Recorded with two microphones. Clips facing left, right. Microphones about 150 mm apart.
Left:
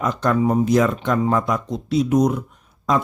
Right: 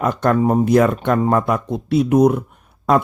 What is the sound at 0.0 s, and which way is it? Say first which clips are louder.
Speech: right 3 dB; 55° right (ahead or behind).